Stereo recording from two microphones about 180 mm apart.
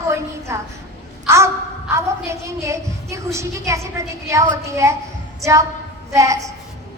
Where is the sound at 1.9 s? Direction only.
15° right (ahead or behind).